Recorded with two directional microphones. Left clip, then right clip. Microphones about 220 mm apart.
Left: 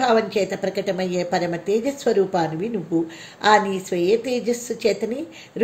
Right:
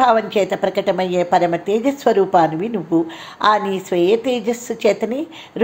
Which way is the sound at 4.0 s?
55° right (ahead or behind).